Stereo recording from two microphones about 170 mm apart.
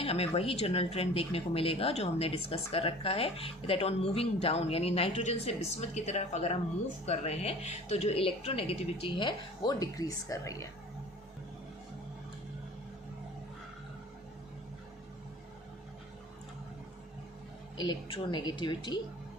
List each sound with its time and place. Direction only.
0.0 s speech: 35° left (ahead or behind); by 10.7 s 20° left (ahead or behind)
17.7 s a woman's voice: 30° left (ahead or behind)